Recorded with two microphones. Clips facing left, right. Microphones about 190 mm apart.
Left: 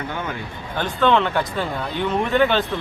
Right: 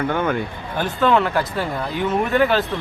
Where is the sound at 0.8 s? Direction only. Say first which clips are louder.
Right 1 dB; 5° right (ahead or behind).